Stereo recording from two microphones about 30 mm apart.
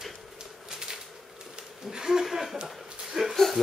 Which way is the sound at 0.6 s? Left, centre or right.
Right.